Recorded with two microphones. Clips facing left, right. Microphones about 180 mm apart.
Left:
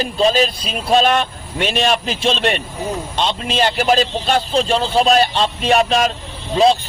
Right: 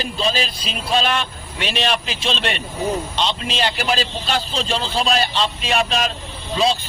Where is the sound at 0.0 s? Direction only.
45° left (ahead or behind).